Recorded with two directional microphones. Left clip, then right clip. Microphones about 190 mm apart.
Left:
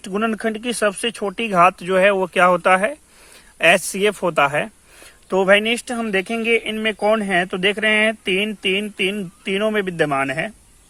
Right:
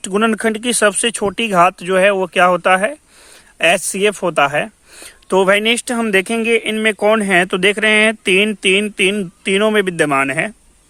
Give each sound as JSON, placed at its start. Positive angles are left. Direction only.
{"t": 0.0, "sound": "speech", "side_deg": -35}
{"t": 4.9, "sound": "speech", "side_deg": -35}